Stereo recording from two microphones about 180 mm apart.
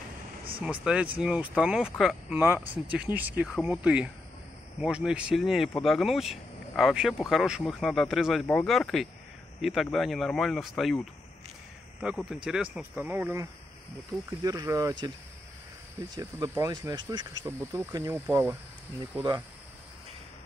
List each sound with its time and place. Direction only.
0.6 s speech: 5° right (ahead or behind)
12.3 s speech: 5° right (ahead or behind)